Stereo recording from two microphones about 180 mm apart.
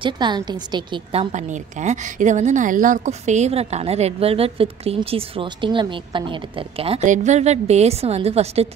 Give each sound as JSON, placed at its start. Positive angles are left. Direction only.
{"t": 0.0, "sound": "a woman's voice", "side_deg": -25}
{"t": 1.3, "sound": "a woman's voice", "side_deg": -40}